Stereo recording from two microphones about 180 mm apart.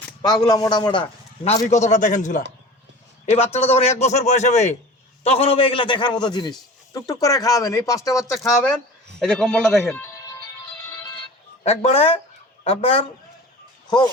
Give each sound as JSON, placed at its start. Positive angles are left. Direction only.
{"t": 0.2, "sound": "a man's voice", "side_deg": 20}
{"t": 1.7, "sound": "a man's voice", "side_deg": 40}
{"t": 11.6, "sound": "a man's voice", "side_deg": 35}